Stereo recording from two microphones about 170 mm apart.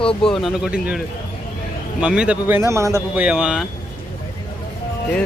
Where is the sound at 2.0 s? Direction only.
5° right (ahead or behind).